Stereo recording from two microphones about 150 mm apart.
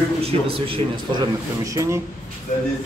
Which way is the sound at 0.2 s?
40° right (ahead or behind).